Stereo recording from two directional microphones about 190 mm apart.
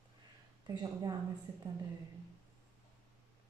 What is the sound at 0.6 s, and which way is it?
Speech, 20° right (ahead or behind).